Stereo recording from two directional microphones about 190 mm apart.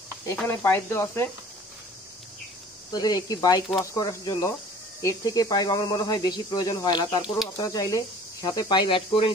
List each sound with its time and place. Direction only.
0.3 s speech: 15° left (ahead or behind)
2.9 s speech: 20° left (ahead or behind)